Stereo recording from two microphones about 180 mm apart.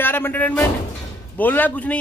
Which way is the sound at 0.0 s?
10° left (ahead or behind).